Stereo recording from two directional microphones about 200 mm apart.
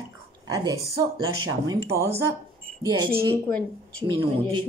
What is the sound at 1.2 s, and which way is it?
Speech, 90° right.